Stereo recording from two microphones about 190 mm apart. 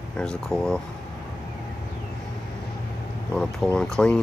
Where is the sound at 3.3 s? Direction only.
5° left (ahead or behind).